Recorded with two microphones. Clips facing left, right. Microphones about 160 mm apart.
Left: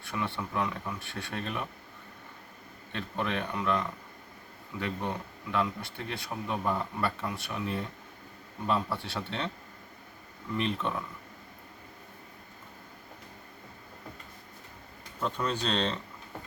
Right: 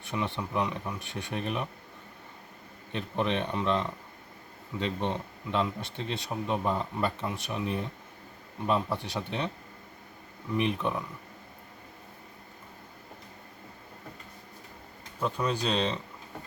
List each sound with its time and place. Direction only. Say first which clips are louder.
0.0 s speech: right 2 dB; 20° right (ahead or behind)
2.9 s a man's voice: right 3 dB; 20° right (ahead or behind)
10.6 s a man's voice: right 2 dB; 15° right (ahead or behind)
15.2 s a man's voice: right 2 dB; 10° right (ahead or behind)